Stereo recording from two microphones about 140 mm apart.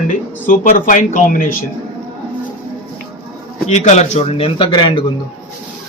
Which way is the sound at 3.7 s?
55° left (ahead or behind).